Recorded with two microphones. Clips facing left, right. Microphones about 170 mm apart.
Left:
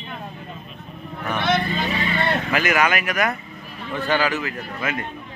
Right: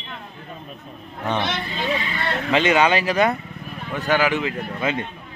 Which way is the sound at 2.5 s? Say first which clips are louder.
Right 6 dB; 25° right (ahead or behind).